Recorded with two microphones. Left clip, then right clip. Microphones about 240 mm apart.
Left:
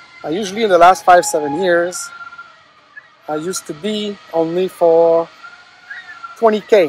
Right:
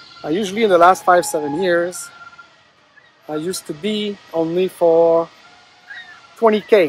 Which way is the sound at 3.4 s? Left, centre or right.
Centre.